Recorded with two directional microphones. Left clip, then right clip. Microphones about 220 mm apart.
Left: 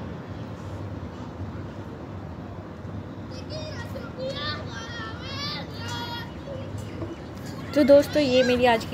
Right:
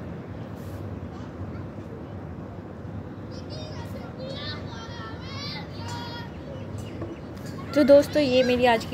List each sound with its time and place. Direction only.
4.2 s children playing: 30° left (ahead or behind)
7.7 s speech: centre (ahead or behind)